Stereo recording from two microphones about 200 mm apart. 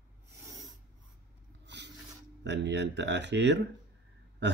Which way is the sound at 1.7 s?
60° right (ahead or behind).